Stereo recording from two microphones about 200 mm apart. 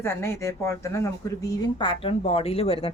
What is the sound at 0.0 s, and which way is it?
Speech, 10° left (ahead or behind).